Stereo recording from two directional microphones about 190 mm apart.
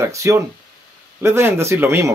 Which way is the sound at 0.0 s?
15° right (ahead or behind).